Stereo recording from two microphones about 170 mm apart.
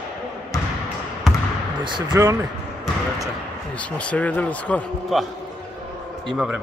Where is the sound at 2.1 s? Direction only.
15° right (ahead or behind).